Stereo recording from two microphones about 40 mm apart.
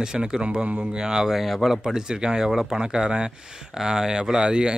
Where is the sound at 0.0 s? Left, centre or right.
Centre.